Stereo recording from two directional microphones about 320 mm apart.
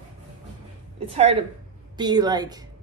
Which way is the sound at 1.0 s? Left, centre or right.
Centre.